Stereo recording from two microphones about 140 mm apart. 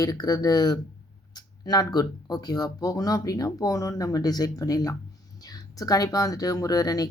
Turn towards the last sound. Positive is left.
turn(degrees=25)  # may be behind; listen again after turning